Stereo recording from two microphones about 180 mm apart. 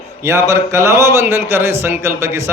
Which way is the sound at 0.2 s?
15° right (ahead or behind).